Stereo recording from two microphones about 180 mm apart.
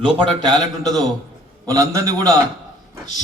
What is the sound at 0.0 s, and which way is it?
A man's voice, 25° right (ahead or behind).